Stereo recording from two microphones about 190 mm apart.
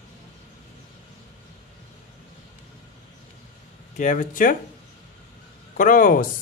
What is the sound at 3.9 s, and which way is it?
Speech, 45° left (ahead or behind).